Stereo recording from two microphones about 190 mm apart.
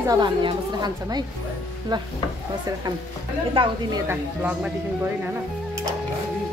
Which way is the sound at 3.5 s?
25° right (ahead or behind).